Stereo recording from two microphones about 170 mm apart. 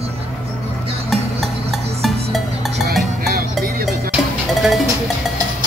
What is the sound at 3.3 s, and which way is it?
Music, 60° right (ahead or behind).